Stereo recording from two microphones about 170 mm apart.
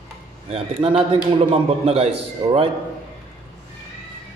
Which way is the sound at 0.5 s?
35° right (ahead or behind).